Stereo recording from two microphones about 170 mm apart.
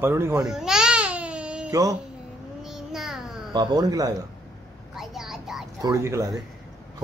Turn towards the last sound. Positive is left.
turn(degrees=-20)  # may be behind; listen again after turning